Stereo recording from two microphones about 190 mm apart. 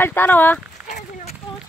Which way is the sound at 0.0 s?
10° left (ahead or behind).